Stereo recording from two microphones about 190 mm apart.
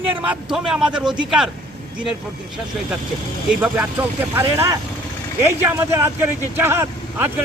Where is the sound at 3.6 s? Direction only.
10° right (ahead or behind).